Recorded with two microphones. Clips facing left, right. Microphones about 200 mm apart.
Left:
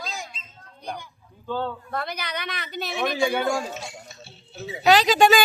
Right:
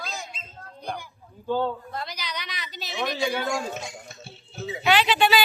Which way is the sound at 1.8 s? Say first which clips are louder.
Left 4 dB; 60° left (ahead or behind).